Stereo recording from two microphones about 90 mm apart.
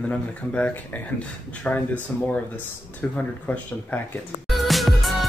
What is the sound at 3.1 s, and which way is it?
Speech, 20° left (ahead or behind).